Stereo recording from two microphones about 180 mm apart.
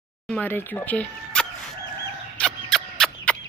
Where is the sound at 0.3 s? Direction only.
10° left (ahead or behind).